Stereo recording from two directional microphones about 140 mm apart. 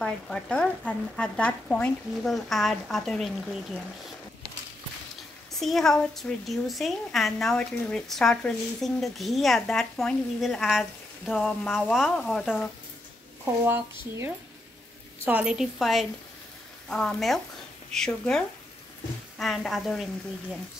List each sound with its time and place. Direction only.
0.0 s a woman's voice: 5° left (ahead or behind)
5.5 s a woman's voice: centre (ahead or behind)
13.7 s a woman's voice: 15° right (ahead or behind); by 20.1 s centre (ahead or behind)